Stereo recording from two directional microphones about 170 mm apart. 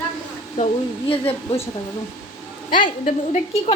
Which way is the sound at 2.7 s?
55° left (ahead or behind).